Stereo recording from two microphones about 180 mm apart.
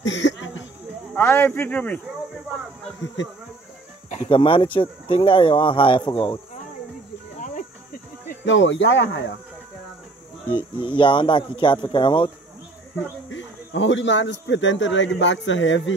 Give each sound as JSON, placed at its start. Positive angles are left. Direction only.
{"t": 0.0, "sound": "a sound", "side_deg": 90}
{"t": 1.1, "sound": "speech", "side_deg": 10}
{"t": 3.2, "sound": "speech", "side_deg": 90}
{"t": 4.1, "sound": "speech", "side_deg": 35}
{"t": 7.3, "sound": "cricket", "side_deg": 45}
{"t": 8.5, "sound": "speech", "side_deg": 90}
{"t": 10.5, "sound": "speech", "side_deg": 25}
{"t": 13.3, "sound": "speech", "side_deg": 90}